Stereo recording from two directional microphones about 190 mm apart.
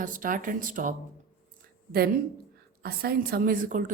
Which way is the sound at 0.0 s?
45° right (ahead or behind).